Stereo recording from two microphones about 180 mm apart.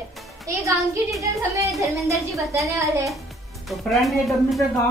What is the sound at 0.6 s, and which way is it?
A woman's voice, 15° right (ahead or behind).